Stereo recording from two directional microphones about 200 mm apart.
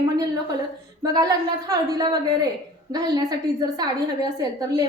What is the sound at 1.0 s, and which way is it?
A woman's voice, 20° right (ahead or behind).